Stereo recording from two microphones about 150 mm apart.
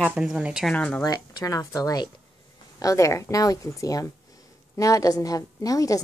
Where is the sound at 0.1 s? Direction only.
5° right (ahead or behind).